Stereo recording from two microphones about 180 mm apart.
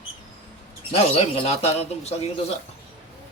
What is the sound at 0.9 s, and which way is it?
Speech, 35° left (ahead or behind).